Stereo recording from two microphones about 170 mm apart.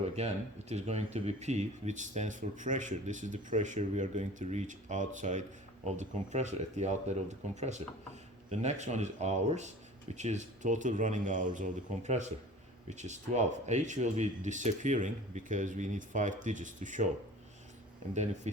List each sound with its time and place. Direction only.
0.2 s speech: 40° right (ahead or behind)
18.1 s speech: 40° right (ahead or behind)